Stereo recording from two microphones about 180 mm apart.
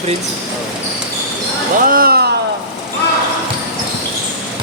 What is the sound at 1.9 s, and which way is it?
Speech, 55° right (ahead or behind).